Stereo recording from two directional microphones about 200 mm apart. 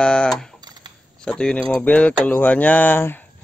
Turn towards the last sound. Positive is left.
turn(degrees=10)  # may be behind; listen again after turning